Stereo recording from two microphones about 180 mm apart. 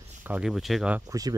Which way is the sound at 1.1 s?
20° right (ahead or behind).